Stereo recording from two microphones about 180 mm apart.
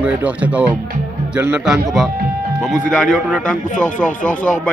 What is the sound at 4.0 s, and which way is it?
Speech, 45° left (ahead or behind).